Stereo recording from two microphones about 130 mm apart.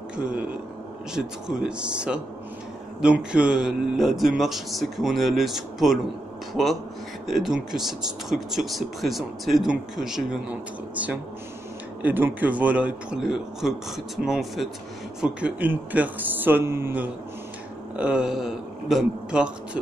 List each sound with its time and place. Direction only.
0.2 s a man's voice: 10° right (ahead or behind)